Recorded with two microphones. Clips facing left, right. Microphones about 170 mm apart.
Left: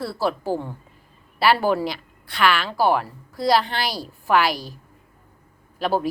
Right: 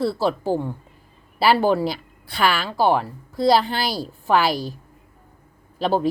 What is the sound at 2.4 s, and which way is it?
Speech, 5° right (ahead or behind).